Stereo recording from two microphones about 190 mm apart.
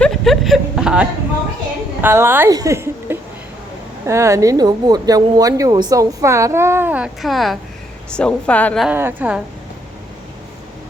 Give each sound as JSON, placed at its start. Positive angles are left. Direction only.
{"t": 0.0, "sound": "a sound", "side_deg": 0}
{"t": 2.0, "sound": "a woman's voice", "side_deg": -10}
{"t": 8.9, "sound": "speech", "side_deg": -10}